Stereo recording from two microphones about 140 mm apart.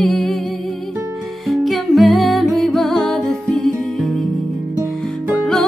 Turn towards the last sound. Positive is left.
turn(degrees=0)  # may be behind; listen again after turning